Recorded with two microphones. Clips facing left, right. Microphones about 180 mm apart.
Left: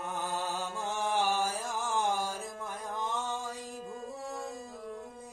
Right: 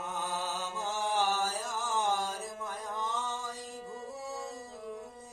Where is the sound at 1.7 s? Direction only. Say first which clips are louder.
Left 1 dB; 60° left (ahead or behind).